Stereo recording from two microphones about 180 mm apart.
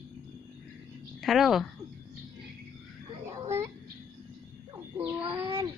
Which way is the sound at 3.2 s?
15° right (ahead or behind).